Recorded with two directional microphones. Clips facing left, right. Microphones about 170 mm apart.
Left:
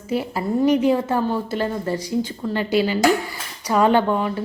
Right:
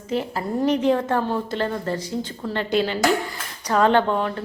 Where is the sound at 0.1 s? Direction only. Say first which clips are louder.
Left 2 dB; 10° left (ahead or behind).